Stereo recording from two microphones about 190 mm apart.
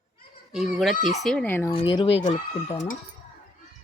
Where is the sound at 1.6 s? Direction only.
25° left (ahead or behind).